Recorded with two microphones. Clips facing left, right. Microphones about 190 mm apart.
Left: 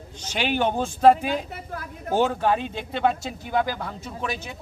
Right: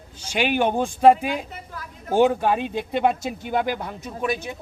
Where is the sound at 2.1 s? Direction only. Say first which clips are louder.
Right 3 dB; 15° right (ahead or behind).